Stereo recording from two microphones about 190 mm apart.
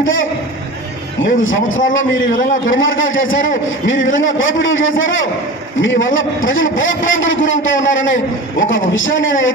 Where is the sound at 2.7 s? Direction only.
90° left.